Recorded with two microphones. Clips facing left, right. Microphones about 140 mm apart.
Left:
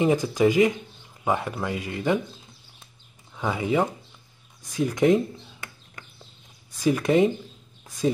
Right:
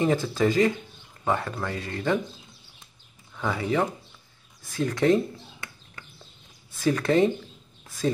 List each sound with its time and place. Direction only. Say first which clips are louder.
0.0 s speech: left 3 dB; 15° left (ahead or behind)
3.3 s speech: left 2 dB; 15° left (ahead or behind)
6.8 s speech: left 1 dB; 15° left (ahead or behind)